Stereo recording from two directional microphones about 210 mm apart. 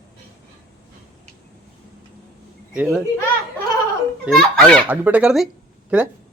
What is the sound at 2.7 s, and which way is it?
Speech, 5° right (ahead or behind).